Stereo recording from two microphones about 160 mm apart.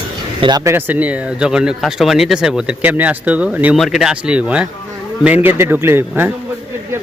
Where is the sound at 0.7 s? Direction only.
10° right (ahead or behind).